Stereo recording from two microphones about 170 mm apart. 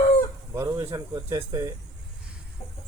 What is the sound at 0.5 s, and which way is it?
Speech, 20° right (ahead or behind).